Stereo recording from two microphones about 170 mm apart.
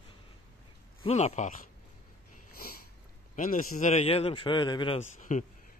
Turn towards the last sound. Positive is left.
turn(degrees=50)  # may be behind; listen again after turning